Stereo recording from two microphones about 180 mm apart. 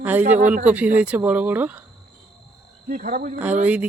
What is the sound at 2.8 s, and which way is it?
Speech, 50° right (ahead or behind).